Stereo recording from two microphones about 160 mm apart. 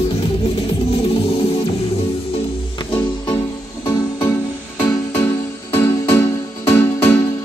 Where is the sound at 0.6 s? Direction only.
35° left (ahead or behind).